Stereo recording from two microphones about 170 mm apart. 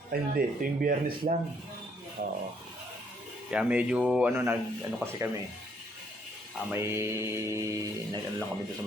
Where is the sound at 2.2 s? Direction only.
60° right (ahead or behind).